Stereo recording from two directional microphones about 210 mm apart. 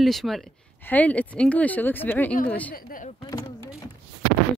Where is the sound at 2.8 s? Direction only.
40° left (ahead or behind).